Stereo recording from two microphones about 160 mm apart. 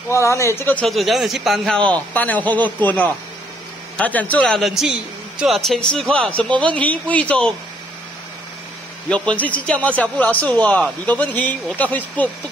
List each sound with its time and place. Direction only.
0.1 s a man's voice: 20° left (ahead or behind)
0.8 s a man's voice: centre (ahead or behind)
9.1 s a man's voice: 10° left (ahead or behind)